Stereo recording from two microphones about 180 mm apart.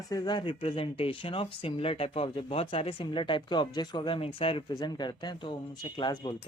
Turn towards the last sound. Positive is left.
turn(degrees=25)  # may be behind; listen again after turning